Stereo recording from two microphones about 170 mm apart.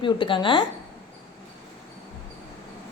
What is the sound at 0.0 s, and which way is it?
Speech, 30° left (ahead or behind).